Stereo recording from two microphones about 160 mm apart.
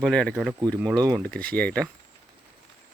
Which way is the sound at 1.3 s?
10° left (ahead or behind).